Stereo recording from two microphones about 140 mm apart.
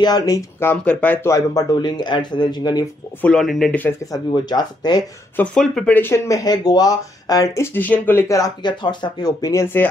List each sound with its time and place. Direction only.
0.0 s speech: 30° left (ahead or behind); by 1.3 s 10° left (ahead or behind)
1.3 s speech: 25° left (ahead or behind)
3.2 s speech: 5° left (ahead or behind)
4.0 s speech: 25° left (ahead or behind)
5.3 s speech: 10° left (ahead or behind)
5.9 s speech: 20° left (ahead or behind)